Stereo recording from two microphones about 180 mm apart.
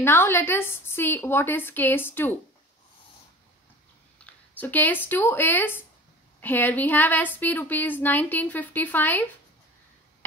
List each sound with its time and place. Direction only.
0.0 s a woman's voice: 15° left (ahead or behind)
4.6 s a woman's voice: 10° left (ahead or behind)